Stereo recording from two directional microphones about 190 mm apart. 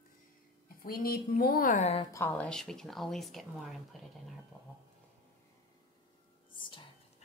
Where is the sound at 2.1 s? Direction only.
10° left (ahead or behind).